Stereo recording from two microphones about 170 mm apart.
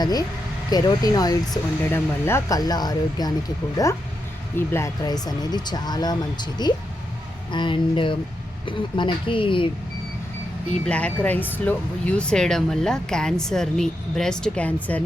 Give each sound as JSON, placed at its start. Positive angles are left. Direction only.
{"t": 0.0, "sound": "speech", "side_deg": 20}
{"t": 10.8, "sound": "speech", "side_deg": 5}